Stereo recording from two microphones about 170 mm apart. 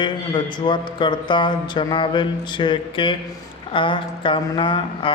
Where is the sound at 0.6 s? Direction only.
25° left (ahead or behind).